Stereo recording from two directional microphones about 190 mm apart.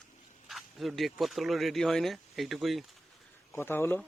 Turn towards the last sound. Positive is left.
turn(degrees=10)  # may be behind; listen again after turning